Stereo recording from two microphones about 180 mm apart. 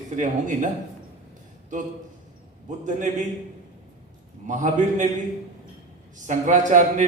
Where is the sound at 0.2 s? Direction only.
45° right (ahead or behind).